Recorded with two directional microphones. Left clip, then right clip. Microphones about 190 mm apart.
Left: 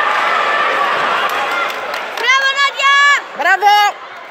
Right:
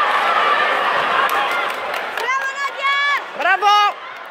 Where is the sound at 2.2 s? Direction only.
55° left (ahead or behind).